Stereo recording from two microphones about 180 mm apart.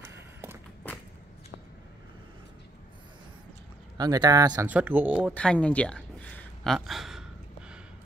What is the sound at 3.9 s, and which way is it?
Speech, 20° right (ahead or behind).